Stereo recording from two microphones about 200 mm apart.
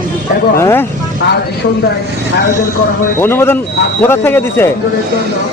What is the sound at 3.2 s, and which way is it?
A man's voice, 10° left (ahead or behind).